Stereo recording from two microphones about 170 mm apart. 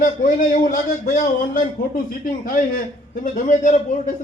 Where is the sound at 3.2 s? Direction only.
45° left (ahead or behind).